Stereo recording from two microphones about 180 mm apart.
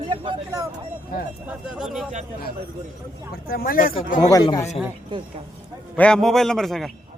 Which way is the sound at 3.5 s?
55° left (ahead or behind).